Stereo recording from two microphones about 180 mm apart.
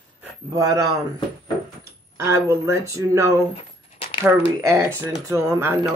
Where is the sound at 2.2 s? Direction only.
15° right (ahead or behind).